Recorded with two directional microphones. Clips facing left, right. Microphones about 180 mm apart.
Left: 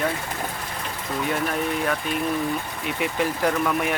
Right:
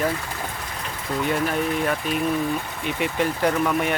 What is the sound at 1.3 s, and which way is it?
Speech, centre (ahead or behind).